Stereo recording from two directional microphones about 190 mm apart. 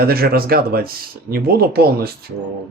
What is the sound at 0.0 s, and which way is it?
Speech, 55° right (ahead or behind).